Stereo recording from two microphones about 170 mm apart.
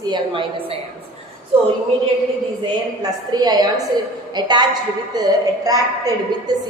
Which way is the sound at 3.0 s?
25° right (ahead or behind).